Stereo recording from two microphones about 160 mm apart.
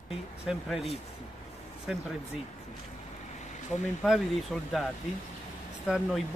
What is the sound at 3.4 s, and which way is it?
Vehicle, 45° left (ahead or behind).